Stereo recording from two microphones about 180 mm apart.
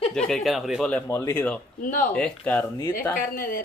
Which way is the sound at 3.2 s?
55° left (ahead or behind).